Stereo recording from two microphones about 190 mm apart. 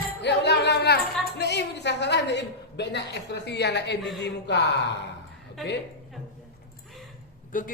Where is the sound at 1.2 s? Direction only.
60° left (ahead or behind).